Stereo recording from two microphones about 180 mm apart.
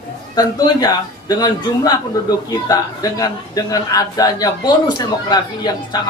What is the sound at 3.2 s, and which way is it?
A man's voice, 20° left (ahead or behind).